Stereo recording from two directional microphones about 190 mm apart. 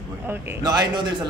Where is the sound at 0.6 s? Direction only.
20° right (ahead or behind).